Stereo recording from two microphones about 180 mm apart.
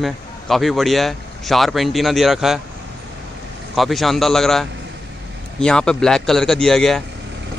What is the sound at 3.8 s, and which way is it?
Speech, centre (ahead or behind).